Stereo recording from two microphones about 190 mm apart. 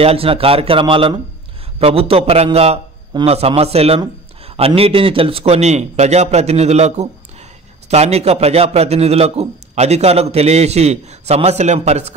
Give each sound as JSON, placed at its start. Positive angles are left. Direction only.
{"t": 0.0, "sound": "a man's voice", "side_deg": -30}